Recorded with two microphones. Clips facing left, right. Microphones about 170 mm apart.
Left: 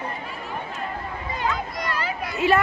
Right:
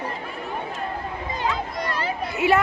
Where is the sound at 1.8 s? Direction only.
30° right (ahead or behind).